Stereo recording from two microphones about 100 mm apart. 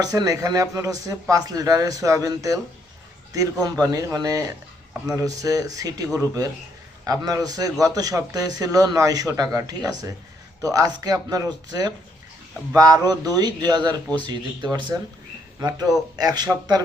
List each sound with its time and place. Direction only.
0.0 s a man's voice: 40° right (ahead or behind)
16.1 s speech: 40° right (ahead or behind)